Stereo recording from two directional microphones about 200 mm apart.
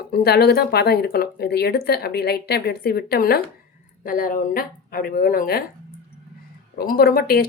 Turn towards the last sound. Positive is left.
turn(degrees=50)  # may be behind; listen again after turning